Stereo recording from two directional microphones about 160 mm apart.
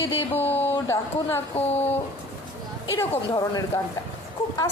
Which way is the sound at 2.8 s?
15° left (ahead or behind).